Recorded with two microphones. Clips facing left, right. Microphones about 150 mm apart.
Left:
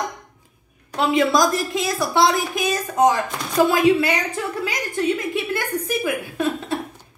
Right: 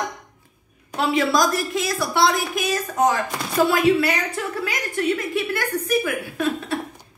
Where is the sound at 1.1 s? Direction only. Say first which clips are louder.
Left 2 dB; 20° left (ahead or behind).